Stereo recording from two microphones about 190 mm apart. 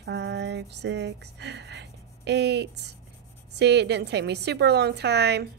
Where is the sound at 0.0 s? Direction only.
65° right (ahead or behind).